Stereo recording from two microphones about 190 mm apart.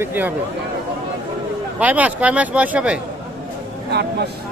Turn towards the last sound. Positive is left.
turn(degrees=-60)  # may be behind; listen again after turning